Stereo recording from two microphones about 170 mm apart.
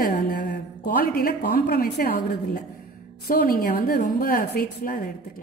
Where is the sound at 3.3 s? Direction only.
60° left (ahead or behind).